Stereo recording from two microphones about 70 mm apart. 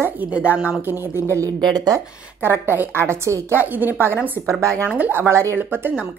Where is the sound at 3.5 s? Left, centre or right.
Right.